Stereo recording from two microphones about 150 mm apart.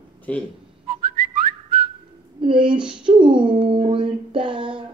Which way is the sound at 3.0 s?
35° right (ahead or behind).